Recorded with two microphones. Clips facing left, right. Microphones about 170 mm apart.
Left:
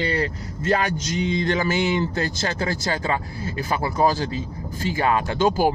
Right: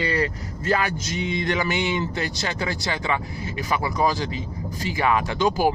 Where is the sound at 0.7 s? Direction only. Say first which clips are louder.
Left 2 dB; 40° left (ahead or behind).